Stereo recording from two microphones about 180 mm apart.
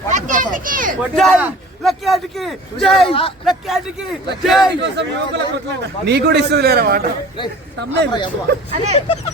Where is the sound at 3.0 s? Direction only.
30° left (ahead or behind).